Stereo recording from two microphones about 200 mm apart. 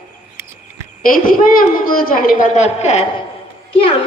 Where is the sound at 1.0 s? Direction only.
45° left (ahead or behind).